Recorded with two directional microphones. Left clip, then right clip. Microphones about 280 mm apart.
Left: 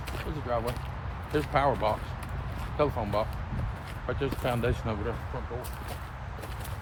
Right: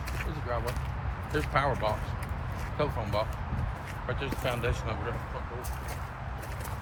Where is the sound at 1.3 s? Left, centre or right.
Left.